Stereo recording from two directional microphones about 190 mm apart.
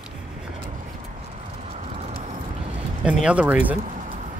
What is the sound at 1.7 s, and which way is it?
Clip-clop, 35° right (ahead or behind).